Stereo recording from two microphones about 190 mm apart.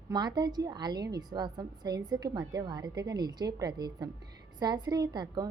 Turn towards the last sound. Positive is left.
turn(degrees=-20)  # may be behind; listen again after turning